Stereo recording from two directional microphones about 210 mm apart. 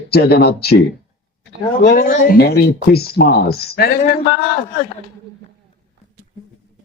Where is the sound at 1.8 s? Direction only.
50° left (ahead or behind).